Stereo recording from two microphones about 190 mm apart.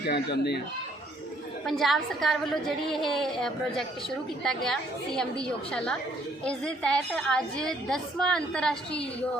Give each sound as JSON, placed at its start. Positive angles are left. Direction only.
{"t": 0.1, "sound": "speech", "side_deg": 60}
{"t": 1.6, "sound": "a woman's voice", "side_deg": 0}